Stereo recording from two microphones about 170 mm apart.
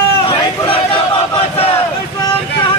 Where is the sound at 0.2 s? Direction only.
30° left (ahead or behind).